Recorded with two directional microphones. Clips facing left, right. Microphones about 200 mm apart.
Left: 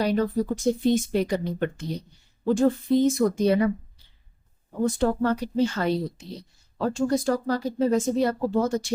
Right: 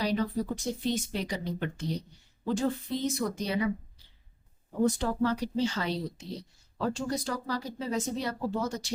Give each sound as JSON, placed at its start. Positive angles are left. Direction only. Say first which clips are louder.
{"t": 0.0, "sound": "speech", "louder": "left 6 dB", "side_deg": 50}
{"t": 4.9, "sound": "speech", "louder": "left 5 dB", "side_deg": 55}